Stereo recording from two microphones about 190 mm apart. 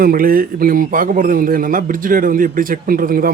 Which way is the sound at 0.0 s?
50° right (ahead or behind).